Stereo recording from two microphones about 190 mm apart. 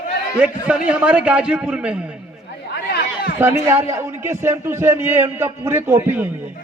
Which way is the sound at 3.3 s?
15° right (ahead or behind).